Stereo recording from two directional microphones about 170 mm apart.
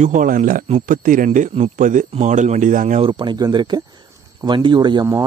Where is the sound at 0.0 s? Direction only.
50° right (ahead or behind).